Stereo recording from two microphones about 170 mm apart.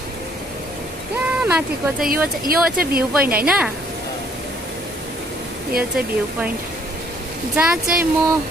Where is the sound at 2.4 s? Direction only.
60° right (ahead or behind).